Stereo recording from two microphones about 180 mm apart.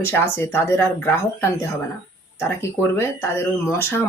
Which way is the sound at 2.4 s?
15° left (ahead or behind).